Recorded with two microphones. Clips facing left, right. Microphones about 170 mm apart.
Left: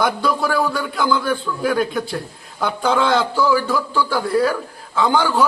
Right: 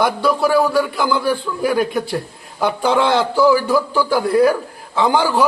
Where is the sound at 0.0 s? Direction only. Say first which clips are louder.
Right 3 dB; 5° right (ahead or behind).